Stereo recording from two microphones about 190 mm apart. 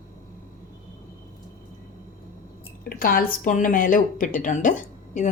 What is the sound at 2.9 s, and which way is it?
A woman's voice, 50° left (ahead or behind).